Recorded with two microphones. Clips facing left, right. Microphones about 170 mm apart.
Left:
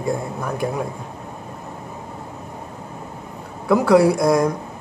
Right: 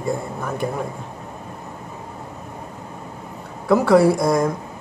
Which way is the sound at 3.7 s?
Centre (ahead or behind).